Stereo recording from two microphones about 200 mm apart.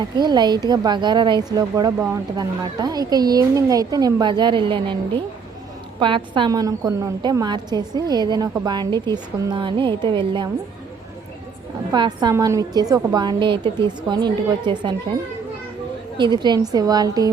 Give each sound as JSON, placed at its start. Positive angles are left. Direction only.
{"t": 0.2, "sound": "a woman's voice", "side_deg": -20}
{"t": 11.9, "sound": "a woman's voice", "side_deg": -20}
{"t": 16.1, "sound": "a woman's voice", "side_deg": -20}